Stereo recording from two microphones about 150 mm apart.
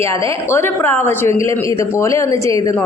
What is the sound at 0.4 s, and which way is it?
A woman's voice, 15° left (ahead or behind).